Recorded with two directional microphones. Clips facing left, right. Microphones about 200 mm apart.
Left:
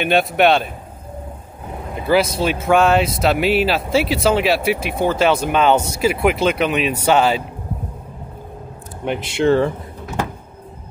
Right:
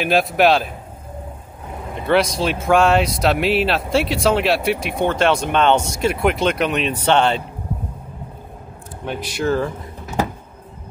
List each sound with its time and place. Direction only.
0.0 s speech: centre (ahead or behind)
2.0 s speech: 5° left (ahead or behind)
9.0 s speech: 20° left (ahead or behind)